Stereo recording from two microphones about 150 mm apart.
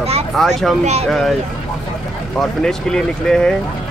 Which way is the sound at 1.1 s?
Centre (ahead or behind).